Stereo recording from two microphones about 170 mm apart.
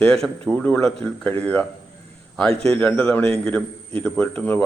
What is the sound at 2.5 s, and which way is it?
Speech, 35° right (ahead or behind).